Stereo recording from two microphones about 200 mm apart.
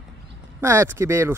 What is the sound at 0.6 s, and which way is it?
Speech, 15° right (ahead or behind).